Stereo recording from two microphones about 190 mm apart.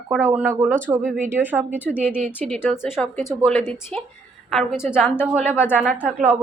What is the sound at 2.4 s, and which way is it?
Speech, 10° left (ahead or behind).